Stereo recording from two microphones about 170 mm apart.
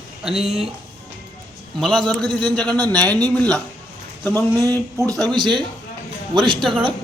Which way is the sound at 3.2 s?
10° left (ahead or behind).